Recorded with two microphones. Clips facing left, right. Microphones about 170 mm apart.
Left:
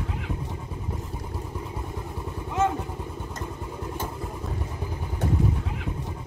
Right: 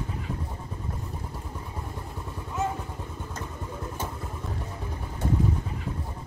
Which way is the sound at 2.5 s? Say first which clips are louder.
Left 5 dB; 75° left (ahead or behind).